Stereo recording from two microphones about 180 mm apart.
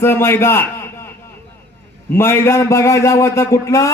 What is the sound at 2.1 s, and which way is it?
A man's voice, 15° left (ahead or behind).